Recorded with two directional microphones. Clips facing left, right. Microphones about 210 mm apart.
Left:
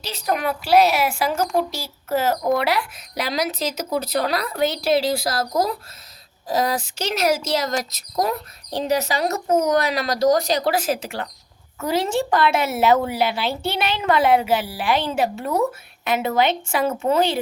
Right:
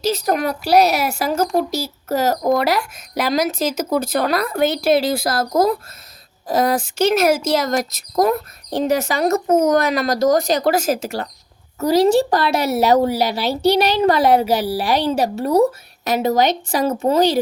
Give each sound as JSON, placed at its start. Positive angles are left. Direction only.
{"t": 0.0, "sound": "speech", "side_deg": -40}